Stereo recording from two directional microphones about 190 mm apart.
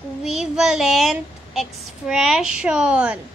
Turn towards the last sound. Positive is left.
turn(degrees=-5)  # may be behind; listen again after turning